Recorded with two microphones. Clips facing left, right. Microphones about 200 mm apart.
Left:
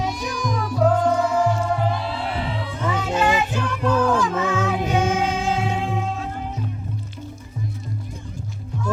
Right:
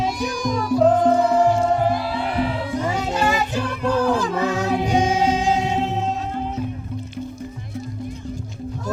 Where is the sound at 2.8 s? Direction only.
35° right (ahead or behind).